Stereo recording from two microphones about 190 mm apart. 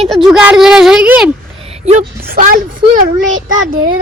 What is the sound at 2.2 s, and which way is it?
Speech, 45° right (ahead or behind).